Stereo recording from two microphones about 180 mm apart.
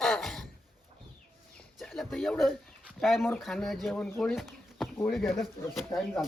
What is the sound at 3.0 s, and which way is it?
Speech, centre (ahead or behind).